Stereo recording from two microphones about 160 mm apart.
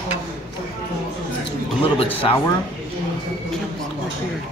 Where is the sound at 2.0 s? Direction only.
35° left (ahead or behind).